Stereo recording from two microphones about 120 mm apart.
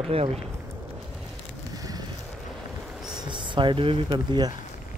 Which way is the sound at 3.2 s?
40° right (ahead or behind).